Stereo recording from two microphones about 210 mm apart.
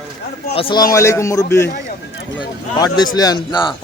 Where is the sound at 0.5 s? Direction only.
25° left (ahead or behind).